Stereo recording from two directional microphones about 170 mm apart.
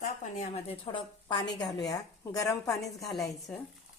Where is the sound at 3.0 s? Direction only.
Centre (ahead or behind).